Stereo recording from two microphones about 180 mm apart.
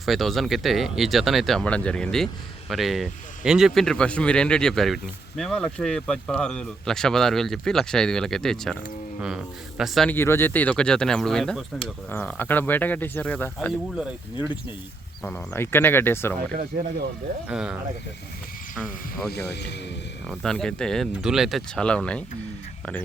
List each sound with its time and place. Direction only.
0.0 s speech: centre (ahead or behind)
10.2 s speech: 15° left (ahead or behind)
15.2 s speech: 10° left (ahead or behind)
17.5 s speech: 5° right (ahead or behind)
19.5 s speech: 70° left (ahead or behind)
20.3 s speech: 5° left (ahead or behind)